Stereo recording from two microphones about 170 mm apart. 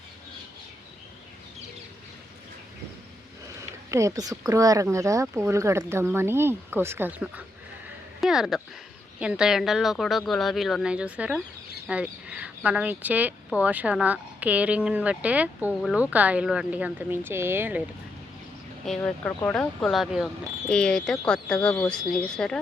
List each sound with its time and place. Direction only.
3.6 s speech: 20° right (ahead or behind)
18.9 s speech: 5° left (ahead or behind)